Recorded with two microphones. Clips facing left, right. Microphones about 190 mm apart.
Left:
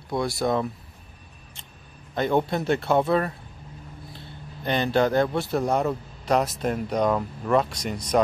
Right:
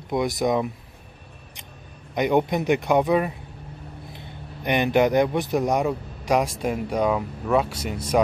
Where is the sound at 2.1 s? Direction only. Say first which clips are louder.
Right 2 dB; 15° right (ahead or behind).